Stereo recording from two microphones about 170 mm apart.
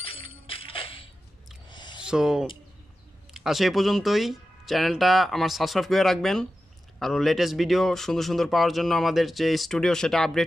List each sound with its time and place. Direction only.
0.0 s music: 35° left (ahead or behind)
1.7 s a sound: 25° left (ahead or behind)
2.0 s speech: 5° right (ahead or behind)